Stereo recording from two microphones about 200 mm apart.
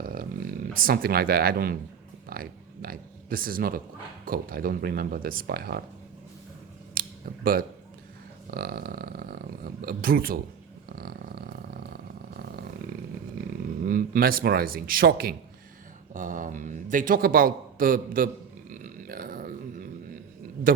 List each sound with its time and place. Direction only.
0.0 s roaring cats: 45° right (ahead or behind)
2.3 s a man's voice: 45° right (ahead or behind)
7.0 s a sound: 45° right (ahead or behind)
8.4 s a man's voice: 50° right (ahead or behind)
10.8 s a sound: 50° right (ahead or behind)
12.3 s roar: 50° right (ahead or behind)
13.8 s a man's voice: 45° right (ahead or behind)
18.7 s grunt: 45° right (ahead or behind)
20.7 s speech: 45° right (ahead or behind)